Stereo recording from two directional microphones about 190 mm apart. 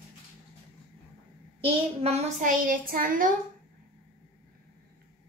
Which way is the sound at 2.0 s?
35° right (ahead or behind).